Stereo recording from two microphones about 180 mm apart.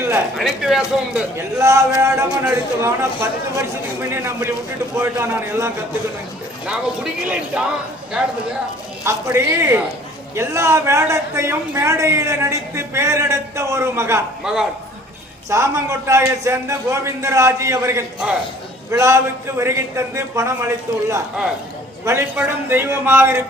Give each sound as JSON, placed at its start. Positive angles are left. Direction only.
{"t": 0.3, "sound": "speech", "side_deg": 0}
{"t": 1.4, "sound": "speech", "side_deg": -15}
{"t": 9.0, "sound": "speech", "side_deg": -15}
{"t": 14.4, "sound": "speech", "side_deg": -5}
{"t": 15.4, "sound": "speech", "side_deg": -15}